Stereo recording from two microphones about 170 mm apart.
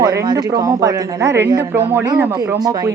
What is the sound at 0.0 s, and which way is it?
A woman's voice, 20° right (ahead or behind).